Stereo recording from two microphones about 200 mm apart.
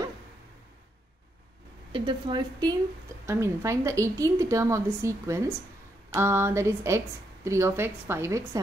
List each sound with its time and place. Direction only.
1.9 s a woman's voice: 25° right (ahead or behind)